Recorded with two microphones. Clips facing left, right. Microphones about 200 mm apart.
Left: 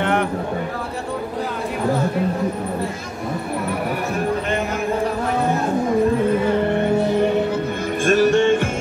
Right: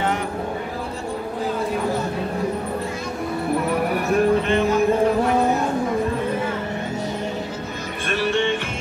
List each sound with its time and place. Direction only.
0.0 s a sound: 60° left (ahead or behind)
6.7 s music: 60° left (ahead or behind)
8.0 s music: 45° left (ahead or behind)